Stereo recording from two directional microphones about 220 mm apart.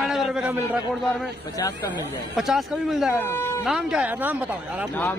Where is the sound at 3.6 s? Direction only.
Centre (ahead or behind).